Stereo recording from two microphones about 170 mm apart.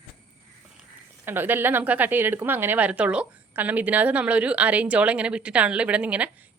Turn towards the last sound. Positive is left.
turn(degrees=-10)  # may be behind; listen again after turning